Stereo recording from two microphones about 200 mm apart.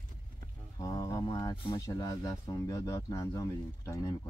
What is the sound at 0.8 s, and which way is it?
Speech, 20° left (ahead or behind).